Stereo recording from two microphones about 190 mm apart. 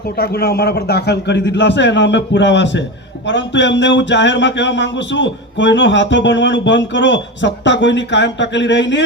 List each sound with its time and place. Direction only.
0.2 s speech: 55° left (ahead or behind); by 9.0 s 70° left (ahead or behind)